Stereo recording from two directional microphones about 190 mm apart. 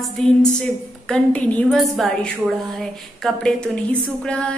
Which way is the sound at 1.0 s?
5° left (ahead or behind).